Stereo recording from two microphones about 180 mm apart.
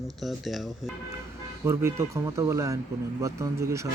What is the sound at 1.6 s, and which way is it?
Speech, 15° right (ahead or behind).